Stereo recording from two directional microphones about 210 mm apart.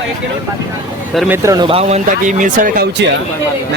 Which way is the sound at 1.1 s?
10° right (ahead or behind).